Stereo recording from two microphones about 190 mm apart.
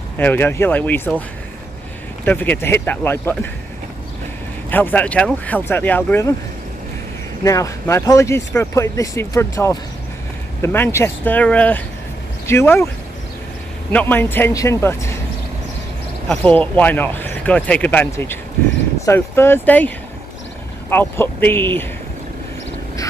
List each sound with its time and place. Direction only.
0.2 s speech: 10° left (ahead or behind)
2.2 s speech: 10° left (ahead or behind)
4.6 s speech: 10° left (ahead or behind)
7.4 s speech: 15° left (ahead or behind)
13.9 s speech: 10° left (ahead or behind)
16.3 s speech: 5° left (ahead or behind)
20.9 s speech: 10° left (ahead or behind)